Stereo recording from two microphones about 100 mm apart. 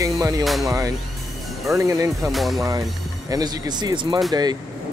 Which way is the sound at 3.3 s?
40° right (ahead or behind).